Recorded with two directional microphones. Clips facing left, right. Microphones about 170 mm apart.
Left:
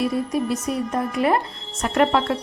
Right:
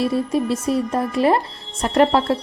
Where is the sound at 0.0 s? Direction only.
30° right (ahead or behind).